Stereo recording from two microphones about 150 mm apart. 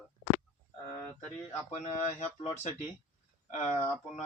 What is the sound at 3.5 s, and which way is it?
Speech, 50° left (ahead or behind).